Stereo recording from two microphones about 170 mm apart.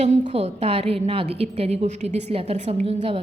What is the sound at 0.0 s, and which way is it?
A woman's voice, 40° right (ahead or behind).